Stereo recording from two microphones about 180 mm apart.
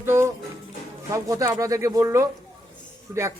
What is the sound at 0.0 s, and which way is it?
Music, 15° right (ahead or behind).